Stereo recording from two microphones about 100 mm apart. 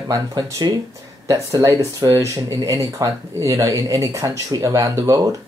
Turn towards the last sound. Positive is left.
turn(degrees=-35)  # may be behind; listen again after turning